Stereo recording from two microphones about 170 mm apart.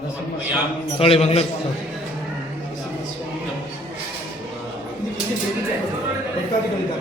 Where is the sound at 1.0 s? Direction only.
35° left (ahead or behind).